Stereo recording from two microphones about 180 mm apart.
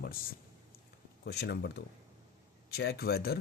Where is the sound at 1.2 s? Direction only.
65° left (ahead or behind).